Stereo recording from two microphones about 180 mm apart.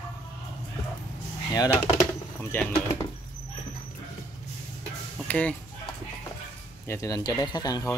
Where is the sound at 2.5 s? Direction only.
10° left (ahead or behind).